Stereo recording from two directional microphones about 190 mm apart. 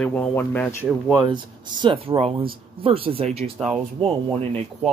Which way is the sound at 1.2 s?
25° right (ahead or behind).